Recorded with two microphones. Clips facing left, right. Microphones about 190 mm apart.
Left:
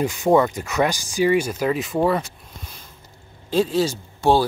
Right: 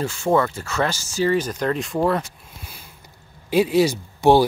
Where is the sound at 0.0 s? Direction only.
15° left (ahead or behind).